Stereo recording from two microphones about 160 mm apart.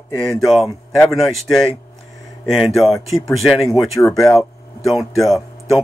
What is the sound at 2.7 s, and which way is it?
Speech, centre (ahead or behind).